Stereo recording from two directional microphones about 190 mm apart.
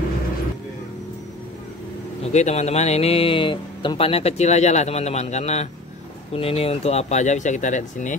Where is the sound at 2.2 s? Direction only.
35° left (ahead or behind).